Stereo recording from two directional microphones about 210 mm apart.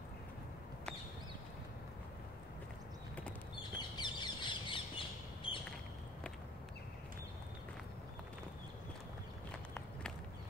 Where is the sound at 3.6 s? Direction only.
20° left (ahead or behind).